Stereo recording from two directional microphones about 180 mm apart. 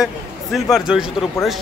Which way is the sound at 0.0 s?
Centre (ahead or behind).